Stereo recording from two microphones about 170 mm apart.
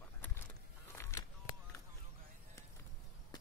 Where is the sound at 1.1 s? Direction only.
15° left (ahead or behind).